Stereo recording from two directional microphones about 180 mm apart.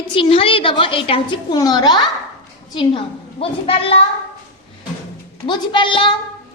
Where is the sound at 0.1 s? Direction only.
30° left (ahead or behind).